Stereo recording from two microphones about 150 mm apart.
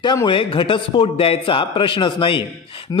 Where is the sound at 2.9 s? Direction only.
25° left (ahead or behind).